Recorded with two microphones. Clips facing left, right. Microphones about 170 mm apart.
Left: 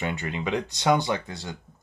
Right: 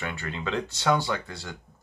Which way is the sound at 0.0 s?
20° left (ahead or behind).